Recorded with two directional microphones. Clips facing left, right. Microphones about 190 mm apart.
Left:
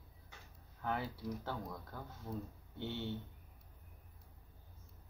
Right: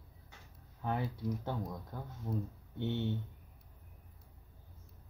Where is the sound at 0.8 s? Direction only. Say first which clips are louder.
Right 3 dB; 15° right (ahead or behind).